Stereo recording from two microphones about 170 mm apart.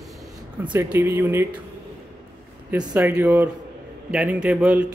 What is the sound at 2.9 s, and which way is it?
Speech, 10° right (ahead or behind).